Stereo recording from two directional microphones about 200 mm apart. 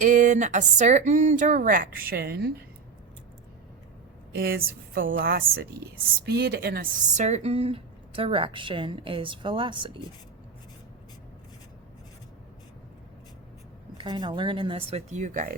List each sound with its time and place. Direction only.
0.0 s speech: 40° right (ahead or behind)
4.4 s a woman's voice: 50° right (ahead or behind)
7.0 s speech: 35° right (ahead or behind)
14.0 s speech: 20° right (ahead or behind); by 15.5 s 40° right (ahead or behind)